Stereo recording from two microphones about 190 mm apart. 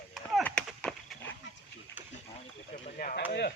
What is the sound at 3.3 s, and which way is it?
Speech, 60° left (ahead or behind).